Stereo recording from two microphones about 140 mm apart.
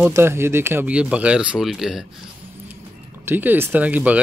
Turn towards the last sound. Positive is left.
turn(degrees=-10)  # may be behind; listen again after turning